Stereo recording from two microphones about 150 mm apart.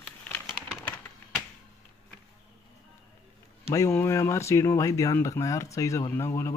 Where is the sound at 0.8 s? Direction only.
10° left (ahead or behind).